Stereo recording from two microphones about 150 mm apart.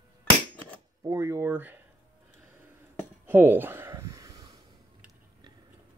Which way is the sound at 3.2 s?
15° right (ahead or behind).